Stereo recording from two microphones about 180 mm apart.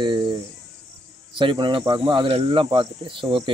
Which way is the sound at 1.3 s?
25° right (ahead or behind).